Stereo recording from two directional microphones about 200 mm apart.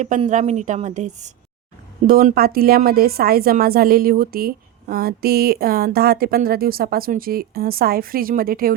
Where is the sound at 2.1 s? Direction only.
45° right (ahead or behind).